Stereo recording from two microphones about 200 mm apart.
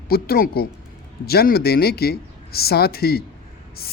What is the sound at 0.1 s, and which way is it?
Speech, 50° left (ahead or behind).